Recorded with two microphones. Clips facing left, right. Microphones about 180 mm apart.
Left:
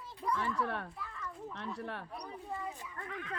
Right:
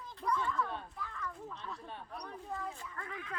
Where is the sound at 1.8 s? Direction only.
70° left (ahead or behind).